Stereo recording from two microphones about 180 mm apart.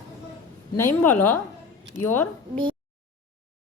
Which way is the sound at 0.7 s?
15° left (ahead or behind).